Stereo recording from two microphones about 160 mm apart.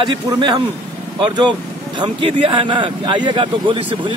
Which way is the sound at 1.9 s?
30° right (ahead or behind).